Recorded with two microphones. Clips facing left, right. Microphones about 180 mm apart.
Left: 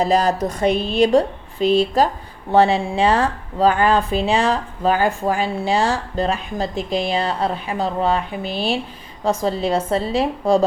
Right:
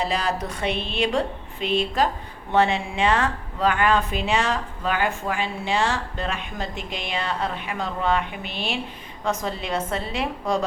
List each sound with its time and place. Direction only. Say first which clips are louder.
0.0 s speech: left 8 dB; 40° left (ahead or behind)